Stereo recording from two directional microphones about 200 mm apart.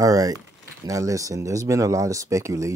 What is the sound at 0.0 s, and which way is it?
Speech, 15° right (ahead or behind).